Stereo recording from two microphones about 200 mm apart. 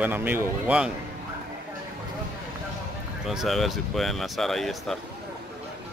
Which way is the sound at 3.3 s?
Centre (ahead or behind).